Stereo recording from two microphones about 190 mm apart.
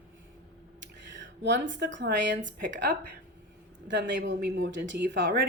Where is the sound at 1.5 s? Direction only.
70° right (ahead or behind).